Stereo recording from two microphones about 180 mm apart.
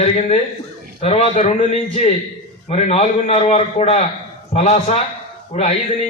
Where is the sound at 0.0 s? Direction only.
40° left (ahead or behind).